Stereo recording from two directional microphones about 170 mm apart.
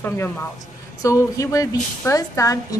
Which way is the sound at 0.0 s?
15° left (ahead or behind).